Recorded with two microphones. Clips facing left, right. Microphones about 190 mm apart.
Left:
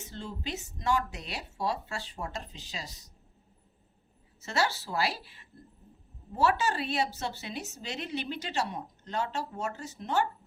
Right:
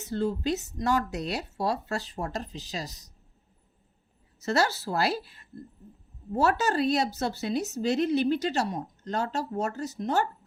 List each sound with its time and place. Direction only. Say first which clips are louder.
0.0 s a woman's voice: right 11 dB; 40° right (ahead or behind)
4.4 s a woman's voice: right 5 dB; 40° right (ahead or behind)